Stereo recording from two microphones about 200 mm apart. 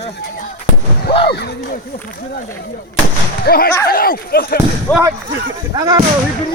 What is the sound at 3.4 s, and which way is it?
Speech, 50° left (ahead or behind).